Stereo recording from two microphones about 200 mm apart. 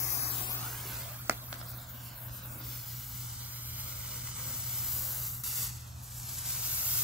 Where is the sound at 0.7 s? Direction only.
Centre (ahead or behind).